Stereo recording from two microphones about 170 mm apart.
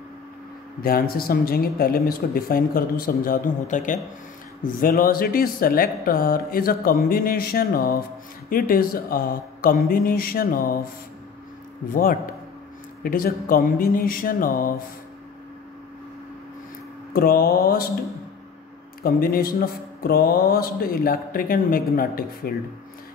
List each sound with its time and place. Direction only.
0.8 s speech: 60° left (ahead or behind)
11.9 s speech: 55° left (ahead or behind)
17.1 s speech: 60° left (ahead or behind)
19.0 s speech: 60° left (ahead or behind)